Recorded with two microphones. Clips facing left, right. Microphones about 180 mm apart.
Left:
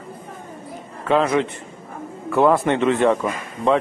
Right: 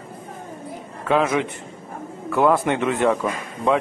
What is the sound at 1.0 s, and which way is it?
A man's voice, 5° right (ahead or behind).